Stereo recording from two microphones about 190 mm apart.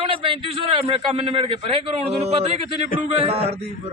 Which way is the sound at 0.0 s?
30° right (ahead or behind).